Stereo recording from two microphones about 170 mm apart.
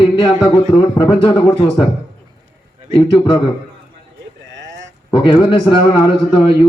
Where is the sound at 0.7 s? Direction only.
25° left (ahead or behind).